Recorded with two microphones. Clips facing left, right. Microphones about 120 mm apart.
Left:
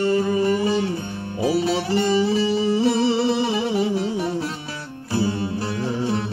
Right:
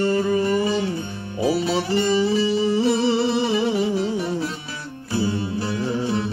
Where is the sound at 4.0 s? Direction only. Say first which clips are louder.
Even; 60° left (ahead or behind).